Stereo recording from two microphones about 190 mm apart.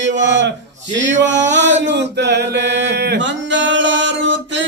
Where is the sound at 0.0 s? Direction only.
70° right (ahead or behind).